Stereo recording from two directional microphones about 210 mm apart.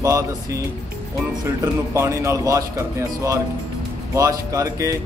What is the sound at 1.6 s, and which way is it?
A man's voice, 15° right (ahead or behind).